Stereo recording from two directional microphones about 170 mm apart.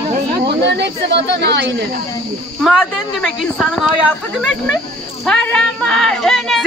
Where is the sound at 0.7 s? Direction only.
90° right.